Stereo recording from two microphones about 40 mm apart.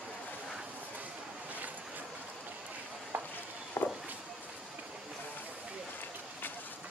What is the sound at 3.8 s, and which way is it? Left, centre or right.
Walk, left.